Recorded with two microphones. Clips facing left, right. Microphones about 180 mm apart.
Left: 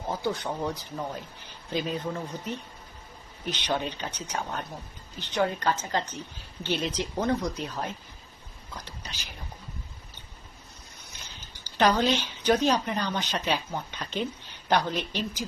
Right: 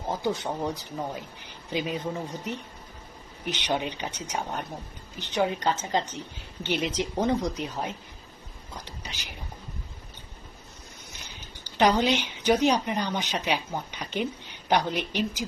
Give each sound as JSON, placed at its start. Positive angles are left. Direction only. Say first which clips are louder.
{"t": 0.1, "sound": "speech", "louder": "right 1 dB", "side_deg": -15}
{"t": 11.8, "sound": "speech", "louder": "right 1 dB", "side_deg": -15}